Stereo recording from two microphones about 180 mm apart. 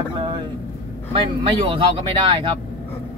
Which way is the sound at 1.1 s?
30° right (ahead or behind).